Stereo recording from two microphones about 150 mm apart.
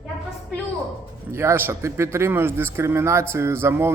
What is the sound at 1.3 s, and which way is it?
Speech, 15° right (ahead or behind).